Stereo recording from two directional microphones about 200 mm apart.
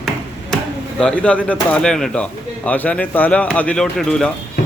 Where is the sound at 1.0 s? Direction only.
5° left (ahead or behind).